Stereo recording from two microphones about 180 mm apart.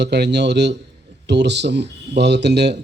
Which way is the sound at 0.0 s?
70° right (ahead or behind).